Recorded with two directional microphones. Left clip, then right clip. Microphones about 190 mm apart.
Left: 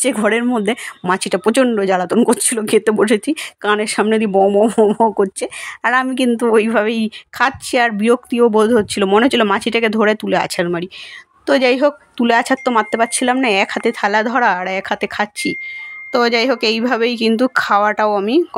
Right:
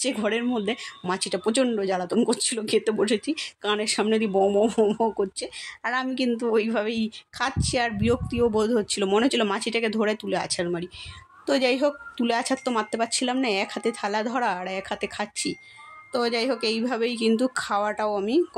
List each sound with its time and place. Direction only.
0.0 s speech: 35° left (ahead or behind)